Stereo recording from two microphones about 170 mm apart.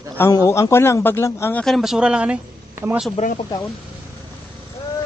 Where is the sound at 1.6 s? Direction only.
Centre (ahead or behind).